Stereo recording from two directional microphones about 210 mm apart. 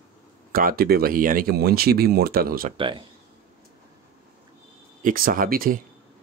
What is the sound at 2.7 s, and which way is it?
Speech, 25° right (ahead or behind).